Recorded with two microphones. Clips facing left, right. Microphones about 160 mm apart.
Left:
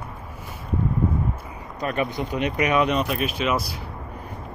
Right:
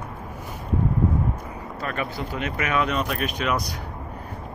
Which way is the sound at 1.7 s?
20° left (ahead or behind).